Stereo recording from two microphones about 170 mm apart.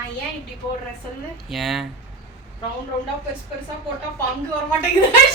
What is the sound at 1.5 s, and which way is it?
Speech, centre (ahead or behind).